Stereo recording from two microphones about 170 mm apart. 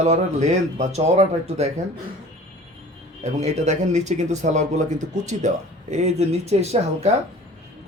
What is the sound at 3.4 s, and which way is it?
Speech, 40° right (ahead or behind).